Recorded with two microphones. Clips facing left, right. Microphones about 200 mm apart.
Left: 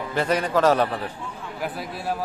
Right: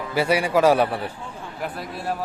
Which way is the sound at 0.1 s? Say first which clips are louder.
Right 2 dB; 10° right (ahead or behind).